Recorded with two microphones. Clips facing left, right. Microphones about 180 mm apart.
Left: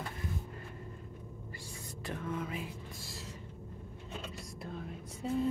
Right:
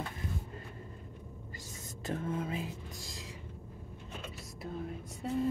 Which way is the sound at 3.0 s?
15° right (ahead or behind).